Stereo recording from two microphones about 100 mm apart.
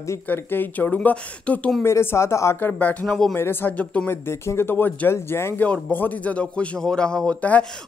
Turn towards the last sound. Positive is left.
turn(degrees=15)  # may be behind; listen again after turning